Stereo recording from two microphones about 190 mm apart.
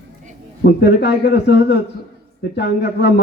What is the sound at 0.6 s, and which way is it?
A man's voice, 60° left (ahead or behind).